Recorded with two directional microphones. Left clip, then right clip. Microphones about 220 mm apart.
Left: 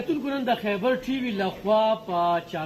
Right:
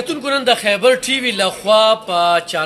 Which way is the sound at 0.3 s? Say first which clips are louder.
Right 14 dB; 30° right (ahead or behind).